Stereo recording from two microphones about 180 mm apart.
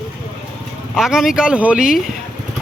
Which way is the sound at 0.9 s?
5° right (ahead or behind).